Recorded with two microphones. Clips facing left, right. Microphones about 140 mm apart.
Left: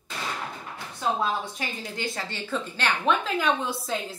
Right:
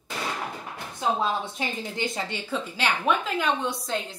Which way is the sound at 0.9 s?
20° right (ahead or behind).